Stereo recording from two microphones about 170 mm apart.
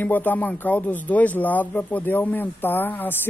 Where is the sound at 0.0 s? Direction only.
10° left (ahead or behind).